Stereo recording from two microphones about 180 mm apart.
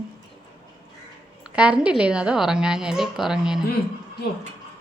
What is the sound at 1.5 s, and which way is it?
A woman's voice, 5° right (ahead or behind).